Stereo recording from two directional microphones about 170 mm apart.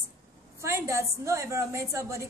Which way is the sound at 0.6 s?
15° right (ahead or behind).